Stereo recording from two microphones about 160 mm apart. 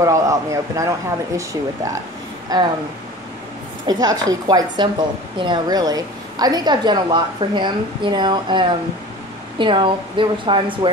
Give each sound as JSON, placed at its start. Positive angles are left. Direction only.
{"t": 0.0, "sound": "a woman's voice", "side_deg": -20}
{"t": 3.8, "sound": "a woman's voice", "side_deg": -25}